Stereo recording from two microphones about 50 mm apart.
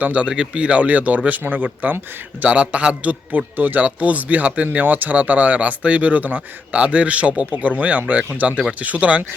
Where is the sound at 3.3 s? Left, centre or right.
Right.